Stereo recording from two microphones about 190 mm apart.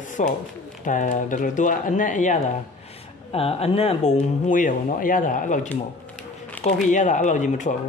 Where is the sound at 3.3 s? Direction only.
30° left (ahead or behind).